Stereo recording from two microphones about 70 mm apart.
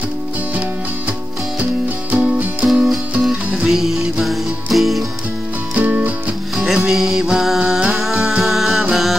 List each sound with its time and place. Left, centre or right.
1.6 s music: right; by 5.0 s centre
5.8 s music: right
6.5 s music: centre